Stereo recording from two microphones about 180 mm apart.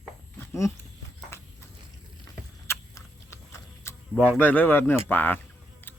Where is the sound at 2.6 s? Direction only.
15° left (ahead or behind).